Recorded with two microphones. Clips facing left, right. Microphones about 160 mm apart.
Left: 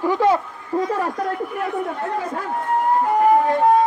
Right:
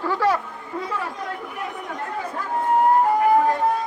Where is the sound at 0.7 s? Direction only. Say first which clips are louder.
Left 9 dB; 35° left (ahead or behind).